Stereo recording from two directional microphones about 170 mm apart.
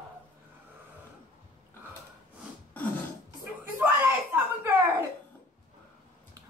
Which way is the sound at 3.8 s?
10° right (ahead or behind).